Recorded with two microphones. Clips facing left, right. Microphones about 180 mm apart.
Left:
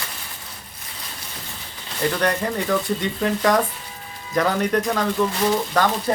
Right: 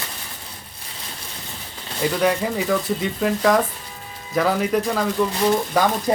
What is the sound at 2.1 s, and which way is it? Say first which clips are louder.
A man's voice: right 4 dB; 5° right (ahead or behind).